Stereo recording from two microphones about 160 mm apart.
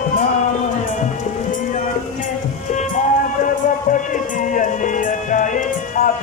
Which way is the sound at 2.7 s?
50° left (ahead or behind).